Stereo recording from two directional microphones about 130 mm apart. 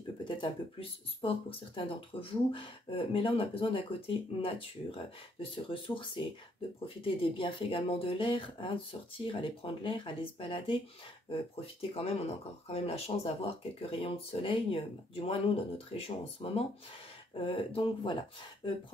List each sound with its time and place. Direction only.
0.2 s speech: 40° left (ahead or behind)